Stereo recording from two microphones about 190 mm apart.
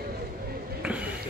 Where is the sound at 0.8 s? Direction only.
5° right (ahead or behind).